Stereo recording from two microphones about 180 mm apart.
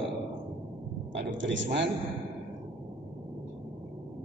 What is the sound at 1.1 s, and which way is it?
Speech, 85° right.